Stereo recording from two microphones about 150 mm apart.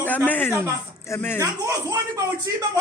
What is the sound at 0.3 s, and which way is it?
Speech, 10° left (ahead or behind).